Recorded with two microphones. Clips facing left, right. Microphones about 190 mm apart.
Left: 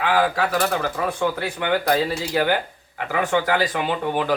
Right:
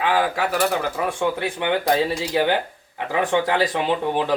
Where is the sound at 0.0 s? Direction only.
20° right (ahead or behind).